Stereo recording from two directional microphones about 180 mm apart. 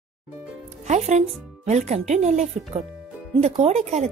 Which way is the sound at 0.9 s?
40° right (ahead or behind).